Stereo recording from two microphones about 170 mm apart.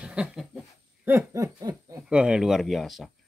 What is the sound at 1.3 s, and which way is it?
Snicker, 20° right (ahead or behind).